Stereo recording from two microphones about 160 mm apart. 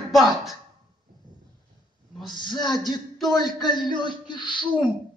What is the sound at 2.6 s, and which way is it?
Speech, 25° left (ahead or behind).